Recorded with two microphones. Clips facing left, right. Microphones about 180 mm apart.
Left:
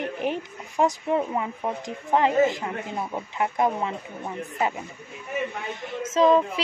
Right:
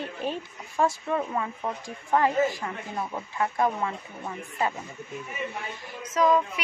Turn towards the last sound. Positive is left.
turn(degrees=25)  # may be behind; listen again after turning